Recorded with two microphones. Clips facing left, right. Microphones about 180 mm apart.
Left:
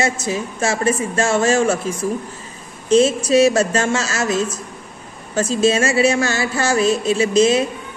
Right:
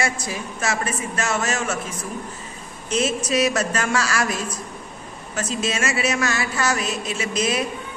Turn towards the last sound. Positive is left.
turn(degrees=25)  # may be behind; listen again after turning